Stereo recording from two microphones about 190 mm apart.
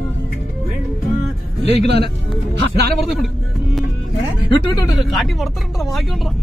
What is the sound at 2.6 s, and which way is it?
Speech, 60° right (ahead or behind).